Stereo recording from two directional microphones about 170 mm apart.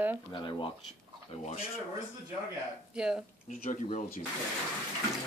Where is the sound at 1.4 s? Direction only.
40° left (ahead or behind).